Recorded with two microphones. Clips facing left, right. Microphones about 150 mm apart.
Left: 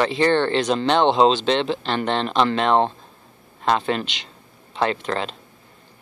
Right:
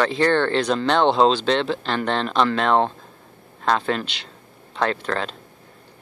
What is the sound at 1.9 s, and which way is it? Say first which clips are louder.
Speech: left 1 dB; 5° left (ahead or behind).